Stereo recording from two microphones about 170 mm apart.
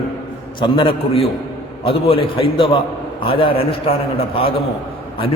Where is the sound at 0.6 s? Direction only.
30° left (ahead or behind).